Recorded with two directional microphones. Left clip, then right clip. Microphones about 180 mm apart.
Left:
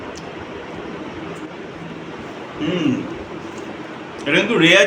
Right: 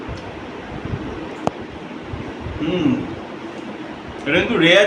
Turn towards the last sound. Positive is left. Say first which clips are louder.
# left 1 dB
turn(degrees=-5)  # may be behind; listen again after turning